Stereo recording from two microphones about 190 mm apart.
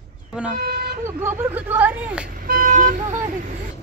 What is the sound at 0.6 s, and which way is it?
Vehicle, 55° right (ahead or behind).